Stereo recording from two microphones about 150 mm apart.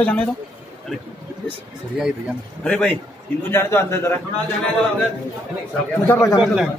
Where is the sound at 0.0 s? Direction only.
10° left (ahead or behind).